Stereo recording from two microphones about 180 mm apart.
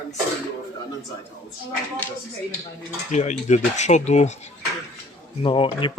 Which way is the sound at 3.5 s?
40° left (ahead or behind).